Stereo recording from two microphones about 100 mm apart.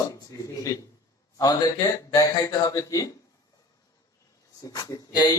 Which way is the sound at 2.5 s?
35° left (ahead or behind).